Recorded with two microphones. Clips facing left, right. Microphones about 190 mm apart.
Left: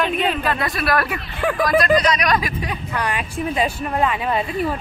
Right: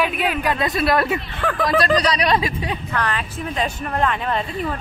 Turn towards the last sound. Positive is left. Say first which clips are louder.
# left 2 dB
turn(degrees=10)  # may be behind; listen again after turning